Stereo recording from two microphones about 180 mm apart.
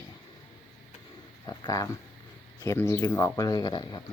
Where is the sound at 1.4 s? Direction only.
20° left (ahead or behind).